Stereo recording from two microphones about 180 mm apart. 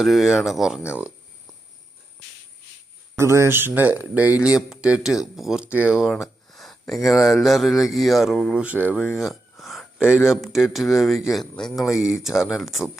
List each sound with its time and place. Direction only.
0.0 s speech: centre (ahead or behind)
3.2 s speech: 15° right (ahead or behind)
9.1 s a sound: centre (ahead or behind)
10.2 s speech: centre (ahead or behind)